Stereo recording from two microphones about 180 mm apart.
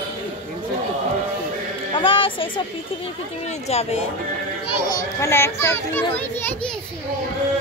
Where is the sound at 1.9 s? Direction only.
30° left (ahead or behind).